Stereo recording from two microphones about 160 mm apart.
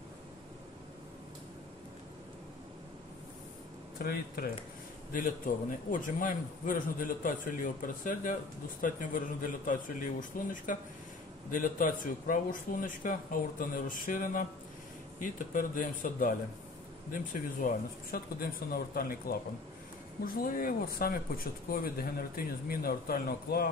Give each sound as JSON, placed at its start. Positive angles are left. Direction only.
{"t": 4.0, "sound": "speech", "side_deg": 70}
{"t": 5.1, "sound": "a man's voice", "side_deg": 60}
{"t": 11.5, "sound": "a man's voice", "side_deg": 60}